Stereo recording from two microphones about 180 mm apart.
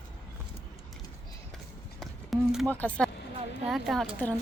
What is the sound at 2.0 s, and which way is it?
Clip-clop, centre (ahead or behind).